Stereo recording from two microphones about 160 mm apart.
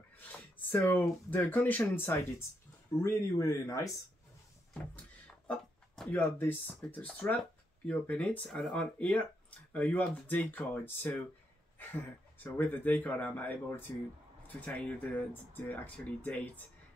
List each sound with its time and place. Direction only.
0.3 s speech: 10° left (ahead or behind)
5.5 s speech: 10° left (ahead or behind)
12.5 s speech: 10° left (ahead or behind)